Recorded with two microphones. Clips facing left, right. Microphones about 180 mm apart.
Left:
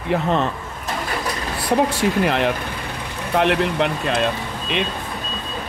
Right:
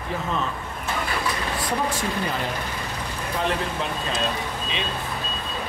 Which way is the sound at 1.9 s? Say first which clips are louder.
Left 8 dB; 75° left (ahead or behind).